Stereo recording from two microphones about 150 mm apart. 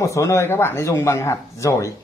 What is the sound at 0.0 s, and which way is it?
Speech, 20° left (ahead or behind).